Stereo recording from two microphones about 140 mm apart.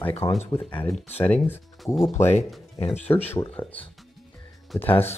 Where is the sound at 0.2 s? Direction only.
20° left (ahead or behind).